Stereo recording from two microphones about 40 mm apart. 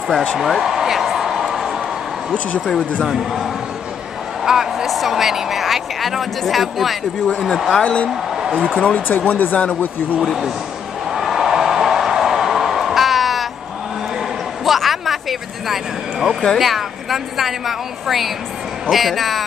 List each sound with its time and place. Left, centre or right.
0.4 s speech: centre
1.1 s a sound: centre
3.1 s a woman's voice: centre
4.5 s a sound: centre
4.8 s a woman's voice: centre
7.8 s speech: left
8.4 s a sound: centre
8.7 s speech: left
9.0 s speech: left
11.1 s a sound: centre
14.6 s vehicle: centre
16.5 s a woman's voice: centre